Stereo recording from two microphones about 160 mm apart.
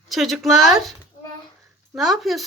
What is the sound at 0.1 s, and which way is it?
Speech, centre (ahead or behind).